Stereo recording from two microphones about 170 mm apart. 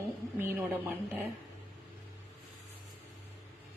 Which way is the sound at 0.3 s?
10° right (ahead or behind).